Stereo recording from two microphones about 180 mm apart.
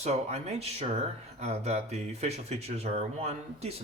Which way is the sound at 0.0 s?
35° right (ahead or behind).